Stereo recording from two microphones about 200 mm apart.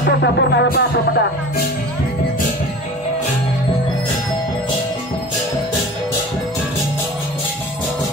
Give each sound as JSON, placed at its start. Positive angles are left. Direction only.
{"t": 0.0, "sound": "music", "side_deg": 60}